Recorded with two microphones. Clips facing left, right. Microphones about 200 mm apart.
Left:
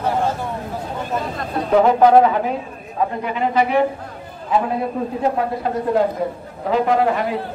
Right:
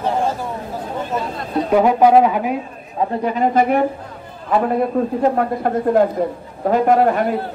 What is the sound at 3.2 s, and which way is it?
Speech, 40° right (ahead or behind).